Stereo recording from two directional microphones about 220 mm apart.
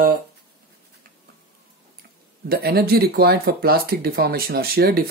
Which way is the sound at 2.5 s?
45° right (ahead or behind).